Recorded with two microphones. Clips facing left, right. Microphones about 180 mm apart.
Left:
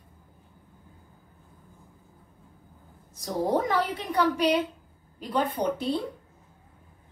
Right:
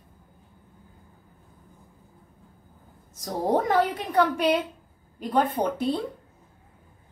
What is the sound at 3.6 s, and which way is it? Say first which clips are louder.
A woman's voice: right 4 dB; 50° right (ahead or behind).